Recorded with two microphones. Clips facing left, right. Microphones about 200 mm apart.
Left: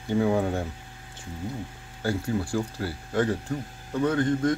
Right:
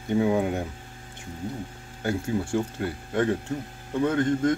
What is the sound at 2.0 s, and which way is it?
Speech, 25° right (ahead or behind).